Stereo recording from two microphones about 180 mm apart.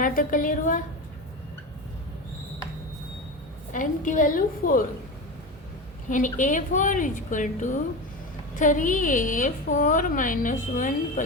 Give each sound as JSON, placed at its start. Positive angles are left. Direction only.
{"t": 0.0, "sound": "a woman's voice", "side_deg": 50}
{"t": 3.7, "sound": "a woman's voice", "side_deg": 45}
{"t": 6.1, "sound": "a woman's voice", "side_deg": 45}